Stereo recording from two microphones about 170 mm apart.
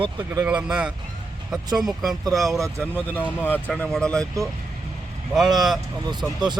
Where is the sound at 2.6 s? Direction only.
15° right (ahead or behind).